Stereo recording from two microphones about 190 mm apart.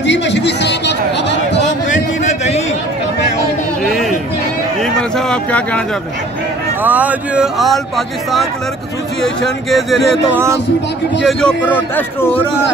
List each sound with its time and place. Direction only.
0.0 s chatter: 65° left (ahead or behind)
2.2 s a sound: 35° left (ahead or behind)
3.8 s chatter: centre (ahead or behind)
4.9 s a sound: 5° left (ahead or behind)
6.8 s speech: 10° right (ahead or behind)
9.2 s speech: centre (ahead or behind)
10.3 s speech: 15° right (ahead or behind)
11.2 s a man's voice: 5° left (ahead or behind)